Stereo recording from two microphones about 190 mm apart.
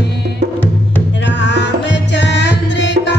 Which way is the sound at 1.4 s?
70° left (ahead or behind).